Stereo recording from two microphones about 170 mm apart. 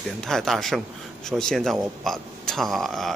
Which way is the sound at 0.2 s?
Centre (ahead or behind).